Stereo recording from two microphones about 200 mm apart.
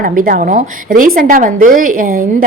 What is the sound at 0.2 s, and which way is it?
A woman's voice, 45° right (ahead or behind).